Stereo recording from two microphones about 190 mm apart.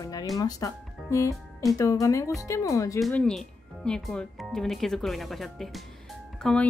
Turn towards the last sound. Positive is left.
turn(degrees=5)  # may be behind; listen again after turning